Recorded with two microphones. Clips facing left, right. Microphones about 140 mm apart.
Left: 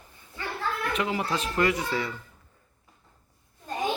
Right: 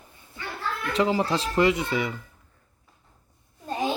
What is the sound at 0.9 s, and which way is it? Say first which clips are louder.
Speech: right 9 dB; 30° right (ahead or behind).